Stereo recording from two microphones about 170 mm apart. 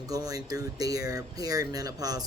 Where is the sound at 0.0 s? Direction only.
20° right (ahead or behind).